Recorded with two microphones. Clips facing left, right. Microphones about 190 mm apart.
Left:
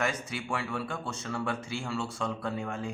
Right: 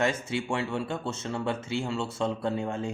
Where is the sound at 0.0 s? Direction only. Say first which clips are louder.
Right 5 dB; 25° right (ahead or behind).